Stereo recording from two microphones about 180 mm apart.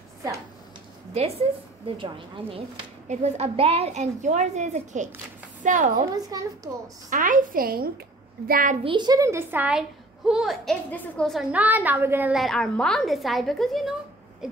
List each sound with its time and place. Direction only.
1.1 s a woman's voice: 35° right (ahead or behind)
3.1 s a woman's voice: 40° right (ahead or behind)
6.2 s a woman's voice: 20° right (ahead or behind)
7.1 s a woman's voice: 45° right (ahead or behind)
8.8 s a woman's voice: 25° right (ahead or behind); by 13.9 s centre (ahead or behind)